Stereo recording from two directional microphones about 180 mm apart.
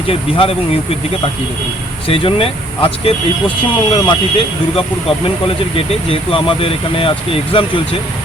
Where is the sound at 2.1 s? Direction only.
30° left (ahead or behind).